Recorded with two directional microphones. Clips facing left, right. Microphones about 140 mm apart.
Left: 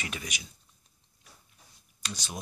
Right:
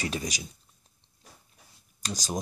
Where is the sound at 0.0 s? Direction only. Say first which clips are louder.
Right 7 dB; 35° right (ahead or behind).